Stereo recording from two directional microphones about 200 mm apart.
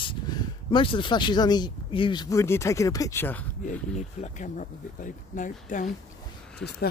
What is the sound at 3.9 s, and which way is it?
Speech, 35° left (ahead or behind).